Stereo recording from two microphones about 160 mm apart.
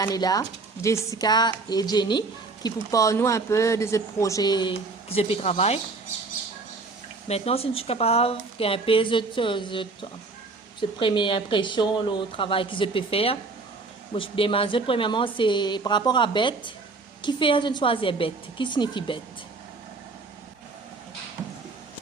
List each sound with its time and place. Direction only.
0.0 s speech: 25° left (ahead or behind); by 5.8 s 40° left (ahead or behind)
7.3 s speech: 40° left (ahead or behind)